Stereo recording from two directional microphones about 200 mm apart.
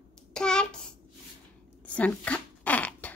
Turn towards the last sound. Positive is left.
turn(degrees=10)  # may be behind; listen again after turning